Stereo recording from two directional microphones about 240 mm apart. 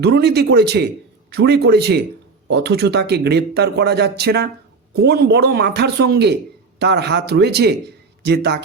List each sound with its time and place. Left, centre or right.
0.0 s a man's voice: right